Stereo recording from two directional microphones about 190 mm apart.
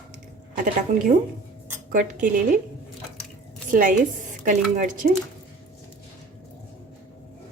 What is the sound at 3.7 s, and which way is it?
A woman's voice, 45° right (ahead or behind).